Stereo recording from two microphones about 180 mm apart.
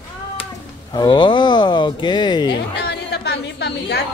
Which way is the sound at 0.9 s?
25° left (ahead or behind).